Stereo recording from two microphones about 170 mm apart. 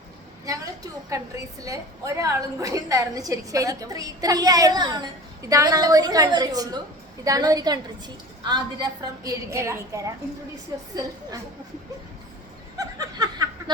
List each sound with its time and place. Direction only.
0.4 s a sound: 20° right (ahead or behind)
1.6 s a woman's voice: 20° right (ahead or behind)
12.7 s snicker: 20° right (ahead or behind)